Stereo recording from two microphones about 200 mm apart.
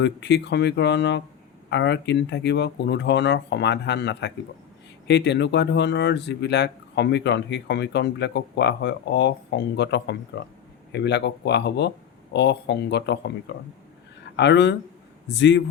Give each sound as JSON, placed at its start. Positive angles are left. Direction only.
{"t": 0.0, "sound": "speech", "side_deg": 60}
{"t": 14.3, "sound": "speech", "side_deg": 60}